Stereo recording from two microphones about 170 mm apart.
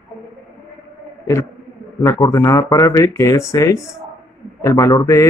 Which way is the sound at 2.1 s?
20° left (ahead or behind).